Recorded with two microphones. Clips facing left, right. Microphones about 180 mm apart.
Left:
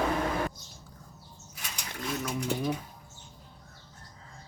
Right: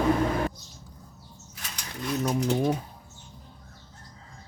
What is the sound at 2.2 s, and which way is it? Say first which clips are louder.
Speech: right 7 dB; 40° right (ahead or behind).